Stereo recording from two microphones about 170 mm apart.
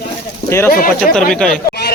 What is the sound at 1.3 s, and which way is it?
Speech, 5° left (ahead or behind).